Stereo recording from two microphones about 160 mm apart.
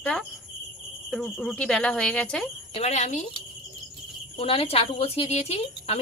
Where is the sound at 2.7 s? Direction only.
45° left (ahead or behind).